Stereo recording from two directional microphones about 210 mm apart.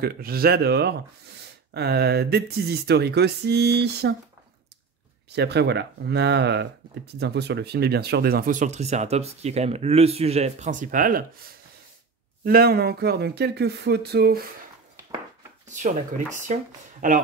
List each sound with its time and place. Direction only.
0.0 s speech: 45° right (ahead or behind)
5.3 s speech: 50° right (ahead or behind)
12.4 s speech: 45° right (ahead or behind)
17.0 s speech: 40° right (ahead or behind)